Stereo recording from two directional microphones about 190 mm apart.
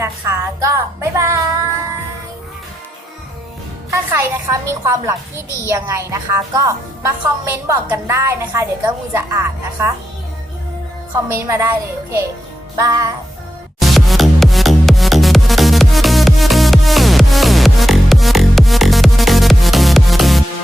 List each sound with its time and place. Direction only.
0.0 s a woman's voice: 15° right (ahead or behind)
3.9 s a woman's voice: 15° right (ahead or behind)
11.3 s a woman's voice: 15° right (ahead or behind)
12.8 s music: 20° right (ahead or behind)
13.7 s music: centre (ahead or behind)